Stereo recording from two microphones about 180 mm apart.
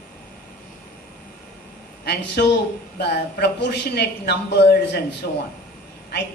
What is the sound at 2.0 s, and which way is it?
A man's voice, 65° left (ahead or behind).